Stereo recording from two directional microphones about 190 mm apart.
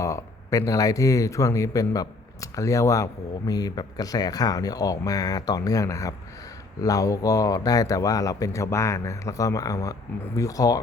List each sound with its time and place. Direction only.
0.0 s speech: 15° left (ahead or behind)